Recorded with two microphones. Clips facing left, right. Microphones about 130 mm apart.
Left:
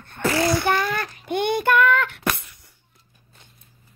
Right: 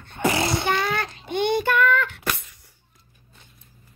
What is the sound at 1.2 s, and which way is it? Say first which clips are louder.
Child singing: left 1 dB; 50° left (ahead or behind).